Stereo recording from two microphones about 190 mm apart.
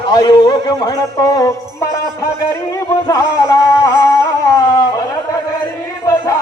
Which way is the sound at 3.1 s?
20° left (ahead or behind).